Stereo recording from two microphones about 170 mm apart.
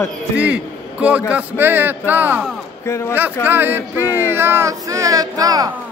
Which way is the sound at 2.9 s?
15° left (ahead or behind).